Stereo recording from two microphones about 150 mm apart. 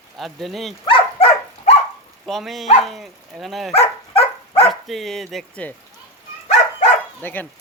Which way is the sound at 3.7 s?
40° left (ahead or behind).